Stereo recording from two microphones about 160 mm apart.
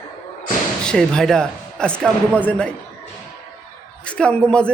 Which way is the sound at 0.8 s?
5° left (ahead or behind).